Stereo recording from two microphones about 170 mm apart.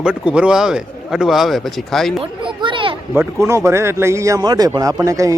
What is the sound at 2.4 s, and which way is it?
Children playing, 30° right (ahead or behind).